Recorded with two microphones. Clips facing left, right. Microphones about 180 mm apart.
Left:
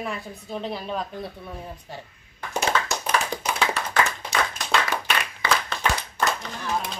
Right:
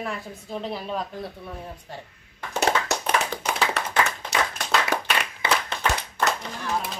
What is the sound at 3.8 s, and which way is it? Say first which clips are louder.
Clapping: right 1 dB; 70° right (ahead or behind).